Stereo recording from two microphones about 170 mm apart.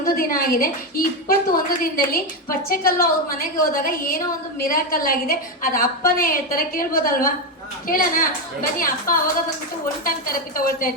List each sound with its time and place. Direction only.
0.0 s a woman's voice: 60° left (ahead or behind)